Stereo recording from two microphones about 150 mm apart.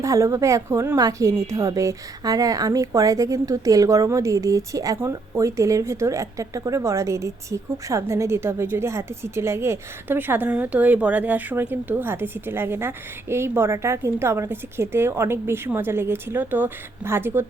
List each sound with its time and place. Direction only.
0.0 s speech: 20° right (ahead or behind)